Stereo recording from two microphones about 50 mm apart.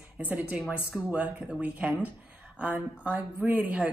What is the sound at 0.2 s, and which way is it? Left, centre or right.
Speech, right.